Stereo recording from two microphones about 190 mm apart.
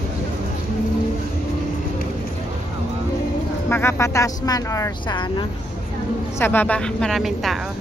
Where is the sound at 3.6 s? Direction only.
10° left (ahead or behind).